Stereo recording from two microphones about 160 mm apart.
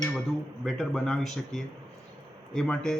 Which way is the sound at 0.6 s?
Centre (ahead or behind).